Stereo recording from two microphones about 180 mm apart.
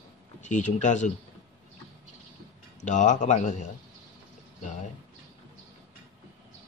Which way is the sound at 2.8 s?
45° left (ahead or behind).